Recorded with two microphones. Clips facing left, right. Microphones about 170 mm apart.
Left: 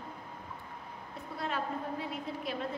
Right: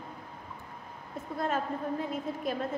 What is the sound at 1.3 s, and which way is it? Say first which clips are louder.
Speech: right 5 dB; 45° right (ahead or behind).